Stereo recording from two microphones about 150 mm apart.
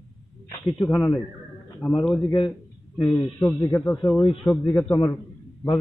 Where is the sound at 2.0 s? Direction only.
5° left (ahead or behind).